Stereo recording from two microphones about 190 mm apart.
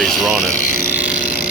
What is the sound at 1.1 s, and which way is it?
Vehicle, 45° left (ahead or behind).